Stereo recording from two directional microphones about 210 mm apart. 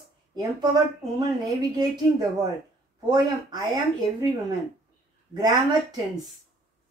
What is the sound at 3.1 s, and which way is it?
A woman's voice, 20° right (ahead or behind).